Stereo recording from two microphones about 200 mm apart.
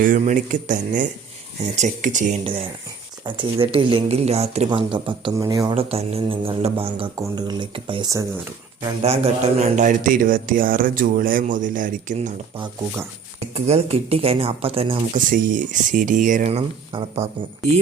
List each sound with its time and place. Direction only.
0.0 s speech: 40° right (ahead or behind)
3.2 s speech: 25° right (ahead or behind)
13.5 s speech: 30° right (ahead or behind)
15.1 s speech: 40° right (ahead or behind)